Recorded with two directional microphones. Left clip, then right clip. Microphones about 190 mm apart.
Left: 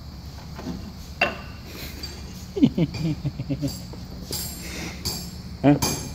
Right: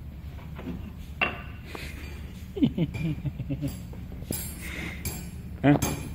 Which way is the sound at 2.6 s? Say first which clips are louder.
Left 6 dB; 15° left (ahead or behind).